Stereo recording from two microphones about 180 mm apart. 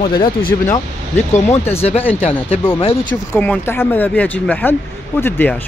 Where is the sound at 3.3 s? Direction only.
10° left (ahead or behind).